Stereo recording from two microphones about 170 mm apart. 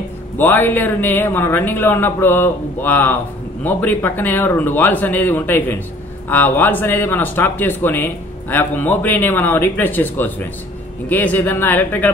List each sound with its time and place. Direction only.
0.4 s speech: 10° left (ahead or behind)